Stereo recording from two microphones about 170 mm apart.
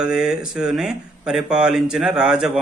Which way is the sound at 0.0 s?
5° right (ahead or behind).